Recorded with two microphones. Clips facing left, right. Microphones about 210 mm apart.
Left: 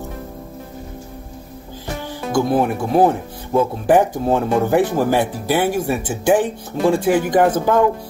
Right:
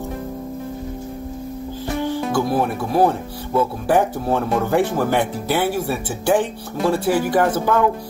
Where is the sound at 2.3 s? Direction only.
20° left (ahead or behind).